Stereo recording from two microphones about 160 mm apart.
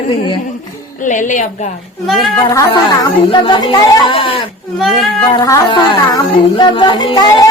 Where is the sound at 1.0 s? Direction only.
50° left (ahead or behind).